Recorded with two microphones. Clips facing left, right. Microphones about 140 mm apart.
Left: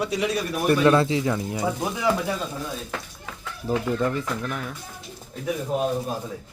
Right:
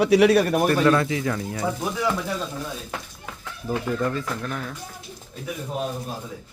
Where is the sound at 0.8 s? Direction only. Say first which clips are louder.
Left 1 dB; 25° left (ahead or behind).